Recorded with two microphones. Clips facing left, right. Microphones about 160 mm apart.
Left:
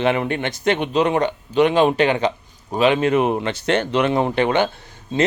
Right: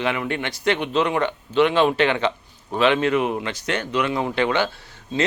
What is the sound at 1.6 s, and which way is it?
Speech, 40° left (ahead or behind).